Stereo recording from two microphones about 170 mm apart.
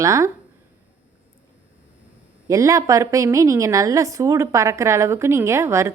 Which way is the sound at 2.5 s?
20° right (ahead or behind).